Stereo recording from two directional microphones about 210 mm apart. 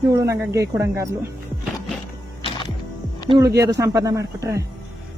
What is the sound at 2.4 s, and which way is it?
Music, 20° left (ahead or behind).